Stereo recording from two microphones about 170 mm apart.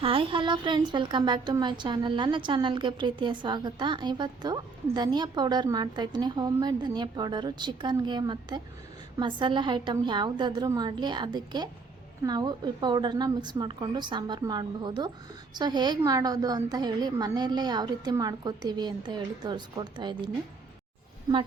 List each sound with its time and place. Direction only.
0.0 s a woman's voice: 30° right (ahead or behind)